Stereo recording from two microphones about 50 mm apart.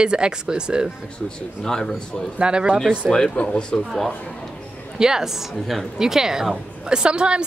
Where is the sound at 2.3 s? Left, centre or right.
Right.